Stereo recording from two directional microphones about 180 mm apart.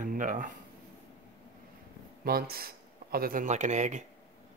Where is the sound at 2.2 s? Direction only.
55° right (ahead or behind); by 4.1 s 40° right (ahead or behind).